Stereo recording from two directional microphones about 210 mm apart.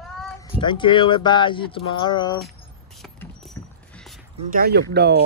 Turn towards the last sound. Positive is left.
turn(degrees=-50)  # may be behind; listen again after turning